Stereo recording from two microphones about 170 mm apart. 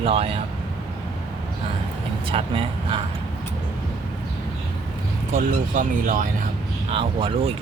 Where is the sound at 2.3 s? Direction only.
30° right (ahead or behind).